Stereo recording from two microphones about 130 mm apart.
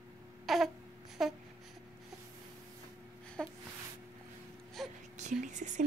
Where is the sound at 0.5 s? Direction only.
Centre (ahead or behind).